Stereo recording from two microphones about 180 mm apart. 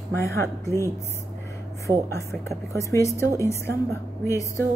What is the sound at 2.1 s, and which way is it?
A woman's voice, 15° left (ahead or behind).